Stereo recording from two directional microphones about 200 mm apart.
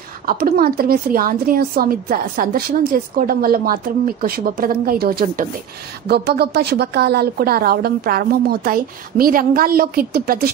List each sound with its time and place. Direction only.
0.3 s a woman's voice: 45° right (ahead or behind)